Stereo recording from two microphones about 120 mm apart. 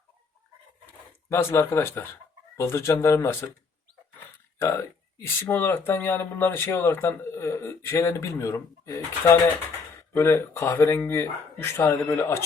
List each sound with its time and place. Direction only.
1.3 s speech: 20° left (ahead or behind)
5.1 s speech: 20° left (ahead or behind)